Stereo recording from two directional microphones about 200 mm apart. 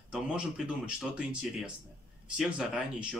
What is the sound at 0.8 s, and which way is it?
Speech, 5° right (ahead or behind).